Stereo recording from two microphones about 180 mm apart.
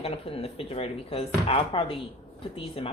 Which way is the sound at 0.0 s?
30° left (ahead or behind).